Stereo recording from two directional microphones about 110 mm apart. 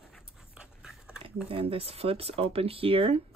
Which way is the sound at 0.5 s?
5° right (ahead or behind).